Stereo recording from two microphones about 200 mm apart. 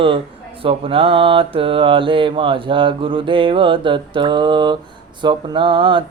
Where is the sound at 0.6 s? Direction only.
25° right (ahead or behind).